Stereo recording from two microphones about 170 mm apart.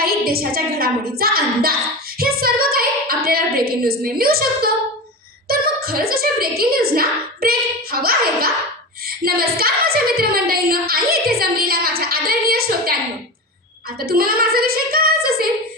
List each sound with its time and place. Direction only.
0.0 s a woman's voice: 60° right (ahead or behind)
14.0 s a woman's voice: 60° right (ahead or behind)